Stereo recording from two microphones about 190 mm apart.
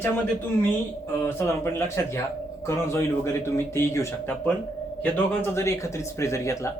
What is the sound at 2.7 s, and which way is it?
Speech, 15° left (ahead or behind).